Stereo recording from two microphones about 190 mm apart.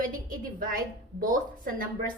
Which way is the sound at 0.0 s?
45° right (ahead or behind).